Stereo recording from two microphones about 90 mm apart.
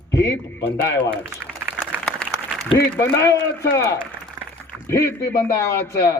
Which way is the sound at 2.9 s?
30° left (ahead or behind).